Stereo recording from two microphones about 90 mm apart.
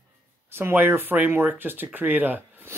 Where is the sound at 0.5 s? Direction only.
25° right (ahead or behind).